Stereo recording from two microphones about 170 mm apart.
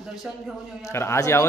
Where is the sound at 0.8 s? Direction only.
15° left (ahead or behind).